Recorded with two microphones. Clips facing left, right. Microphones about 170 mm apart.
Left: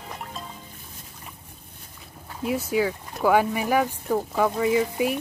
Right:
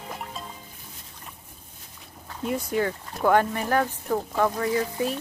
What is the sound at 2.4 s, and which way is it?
Speech, 5° left (ahead or behind).